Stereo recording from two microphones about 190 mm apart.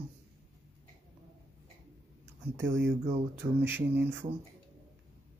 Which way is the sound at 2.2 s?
15° right (ahead or behind).